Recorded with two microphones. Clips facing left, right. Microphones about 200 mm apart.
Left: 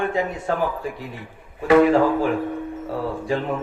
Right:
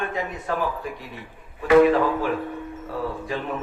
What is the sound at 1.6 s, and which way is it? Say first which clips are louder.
Speech: left 1 dB; 30° left (ahead or behind).